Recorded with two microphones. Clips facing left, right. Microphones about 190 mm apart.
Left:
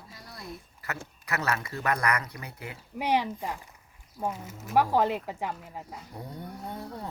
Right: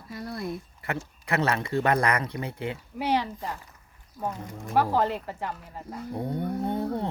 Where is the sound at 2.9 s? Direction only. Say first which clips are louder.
Left 1 dB; 15° left (ahead or behind).